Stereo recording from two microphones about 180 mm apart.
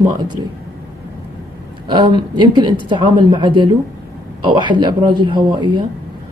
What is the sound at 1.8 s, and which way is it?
Speech, 25° right (ahead or behind).